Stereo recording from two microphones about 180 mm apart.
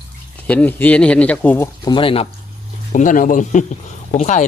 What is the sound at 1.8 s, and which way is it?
Speech, 25° left (ahead or behind).